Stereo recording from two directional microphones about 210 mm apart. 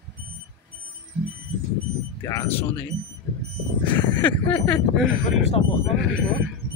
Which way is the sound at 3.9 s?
10° left (ahead or behind).